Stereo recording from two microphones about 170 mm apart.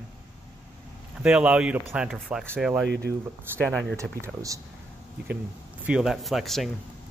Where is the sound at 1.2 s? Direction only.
5° right (ahead or behind).